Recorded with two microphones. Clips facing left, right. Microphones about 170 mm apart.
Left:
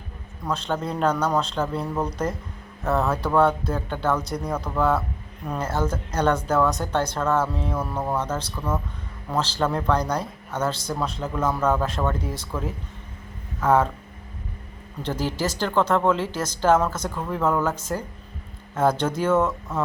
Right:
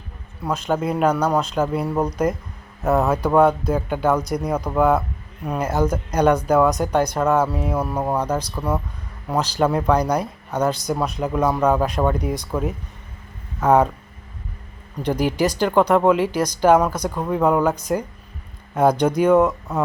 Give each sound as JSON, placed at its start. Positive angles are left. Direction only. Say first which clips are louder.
{"t": 0.7, "sound": "speech", "louder": "right 5 dB", "side_deg": -10}
{"t": 15.0, "sound": "speech", "louder": "right 6 dB", "side_deg": -15}